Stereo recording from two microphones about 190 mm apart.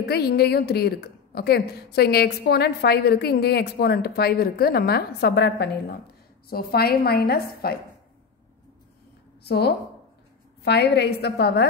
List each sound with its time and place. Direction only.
0.0 s a woman's voice: 55° left (ahead or behind)
9.4 s a woman's voice: 60° left (ahead or behind)